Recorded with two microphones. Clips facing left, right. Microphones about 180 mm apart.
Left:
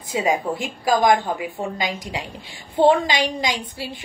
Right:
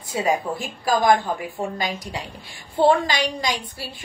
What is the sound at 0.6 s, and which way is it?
A woman's voice, 15° left (ahead or behind).